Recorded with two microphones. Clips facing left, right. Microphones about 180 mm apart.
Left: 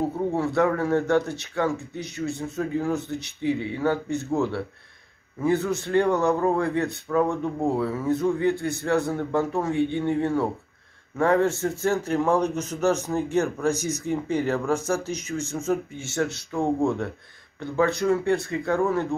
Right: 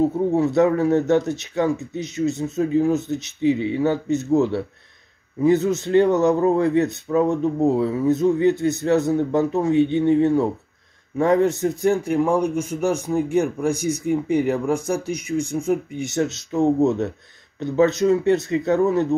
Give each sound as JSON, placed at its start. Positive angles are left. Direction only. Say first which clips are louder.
{"t": 0.4, "sound": "a man's voice", "louder": "right 5 dB", "side_deg": -20}